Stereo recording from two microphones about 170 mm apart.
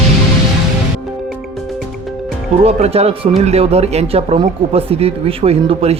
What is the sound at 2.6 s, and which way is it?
Speech, 35° right (ahead or behind).